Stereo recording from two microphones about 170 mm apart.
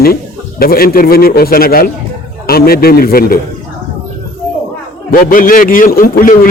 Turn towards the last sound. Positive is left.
turn(degrees=55)  # may be behind; listen again after turning